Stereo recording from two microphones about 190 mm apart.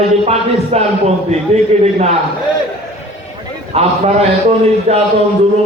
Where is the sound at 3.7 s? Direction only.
35° right (ahead or behind).